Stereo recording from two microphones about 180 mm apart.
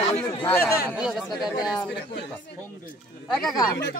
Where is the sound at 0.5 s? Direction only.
10° left (ahead or behind).